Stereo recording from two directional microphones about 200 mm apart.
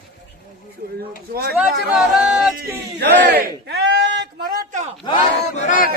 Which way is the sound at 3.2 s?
50° right (ahead or behind).